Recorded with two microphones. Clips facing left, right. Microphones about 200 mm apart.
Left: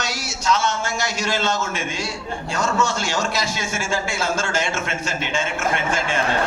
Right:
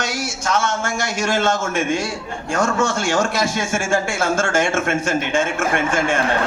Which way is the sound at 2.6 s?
50° right (ahead or behind).